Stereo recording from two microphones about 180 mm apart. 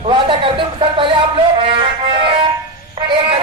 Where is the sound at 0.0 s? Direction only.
30° right (ahead or behind).